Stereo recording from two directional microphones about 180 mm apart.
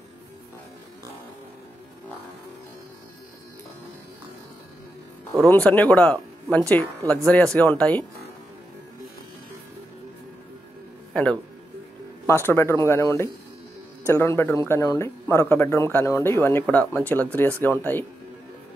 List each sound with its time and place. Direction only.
5.5 s speech: 10° left (ahead or behind)
12.3 s speech: 15° left (ahead or behind)